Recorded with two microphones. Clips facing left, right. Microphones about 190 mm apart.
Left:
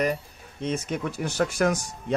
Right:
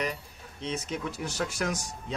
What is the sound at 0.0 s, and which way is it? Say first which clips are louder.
Speech: left 7 dB; 50° left (ahead or behind).